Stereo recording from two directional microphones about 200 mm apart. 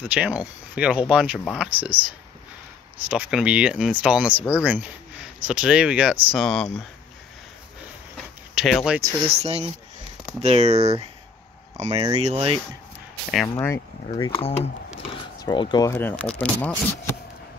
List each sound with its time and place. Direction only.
0.0 s speech: 5° right (ahead or behind)
1.8 s speech: 5° right (ahead or behind)
8.5 s speech: centre (ahead or behind)
9.3 s speech: 30° right (ahead or behind)
13.3 s speech: centre (ahead or behind)
14.1 s speech: 25° left (ahead or behind); by 16.7 s 5° left (ahead or behind)